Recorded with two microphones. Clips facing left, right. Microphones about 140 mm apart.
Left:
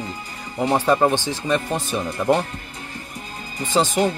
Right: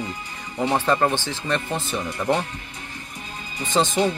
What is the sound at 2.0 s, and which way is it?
Speech, 30° left (ahead or behind).